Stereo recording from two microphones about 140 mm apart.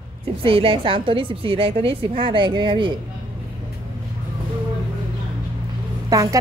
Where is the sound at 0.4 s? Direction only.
40° right (ahead or behind).